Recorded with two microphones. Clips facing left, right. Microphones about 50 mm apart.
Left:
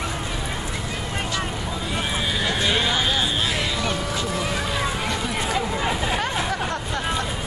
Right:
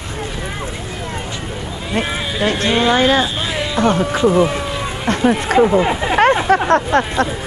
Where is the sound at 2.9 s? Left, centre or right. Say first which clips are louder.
Right 10 dB; right.